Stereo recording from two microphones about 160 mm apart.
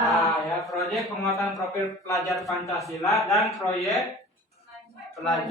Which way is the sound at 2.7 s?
20° left (ahead or behind).